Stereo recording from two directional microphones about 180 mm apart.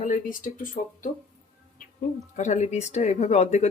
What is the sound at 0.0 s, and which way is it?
Speech, 45° left (ahead or behind).